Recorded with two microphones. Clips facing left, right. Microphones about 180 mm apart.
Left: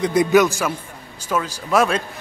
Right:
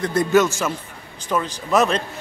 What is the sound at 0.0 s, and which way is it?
Speech, 15° left (ahead or behind).